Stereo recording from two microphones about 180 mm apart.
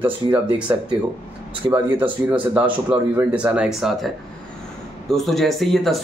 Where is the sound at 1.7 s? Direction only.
10° right (ahead or behind).